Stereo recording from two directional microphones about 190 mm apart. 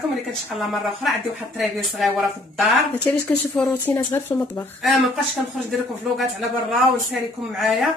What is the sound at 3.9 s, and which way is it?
Speech, 15° left (ahead or behind).